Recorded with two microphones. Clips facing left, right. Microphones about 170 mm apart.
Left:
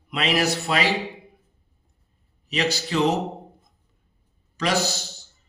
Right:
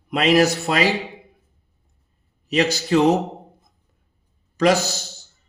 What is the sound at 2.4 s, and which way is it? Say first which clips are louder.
Speech: right 5 dB; 45° right (ahead or behind).